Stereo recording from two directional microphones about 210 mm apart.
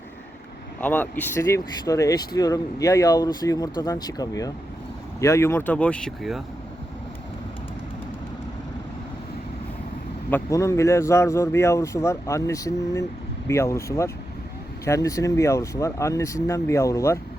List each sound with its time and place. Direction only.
0.8 s speech: 5° left (ahead or behind)
10.2 s speech: 10° left (ahead or behind)